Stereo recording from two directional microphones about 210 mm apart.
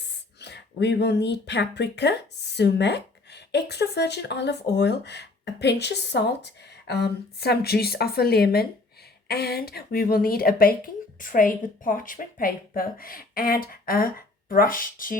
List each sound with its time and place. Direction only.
0.3 s speech: 55° left (ahead or behind)